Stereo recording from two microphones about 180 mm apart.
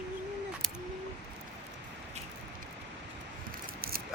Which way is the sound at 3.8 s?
55° right (ahead or behind).